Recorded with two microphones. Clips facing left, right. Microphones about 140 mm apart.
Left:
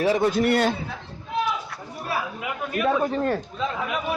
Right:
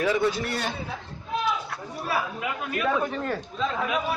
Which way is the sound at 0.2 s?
55° left (ahead or behind).